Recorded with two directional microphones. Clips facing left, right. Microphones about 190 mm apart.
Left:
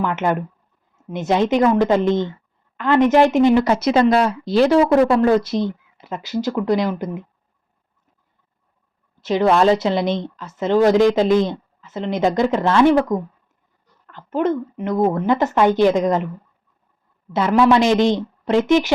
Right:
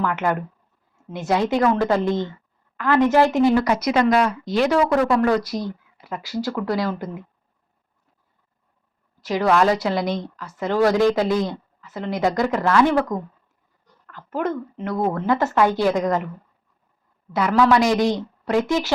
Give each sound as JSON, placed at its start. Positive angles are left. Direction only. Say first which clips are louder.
{"t": 0.0, "sound": "a woman's voice", "louder": "left 2 dB", "side_deg": 20}
{"t": 9.2, "sound": "a woman's voice", "louder": "left 3 dB", "side_deg": 25}
{"t": 17.3, "sound": "a woman's voice", "louder": "left 3 dB", "side_deg": 25}